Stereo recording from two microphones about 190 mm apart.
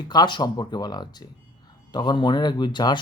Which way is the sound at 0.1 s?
20° left (ahead or behind).